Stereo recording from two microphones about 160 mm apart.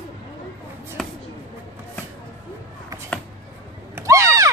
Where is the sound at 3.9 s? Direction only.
20° right (ahead or behind).